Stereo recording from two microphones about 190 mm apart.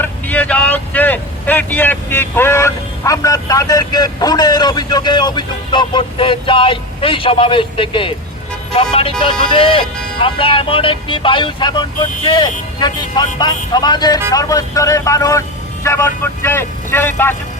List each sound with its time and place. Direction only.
0.0 s speech: 10° left (ahead or behind)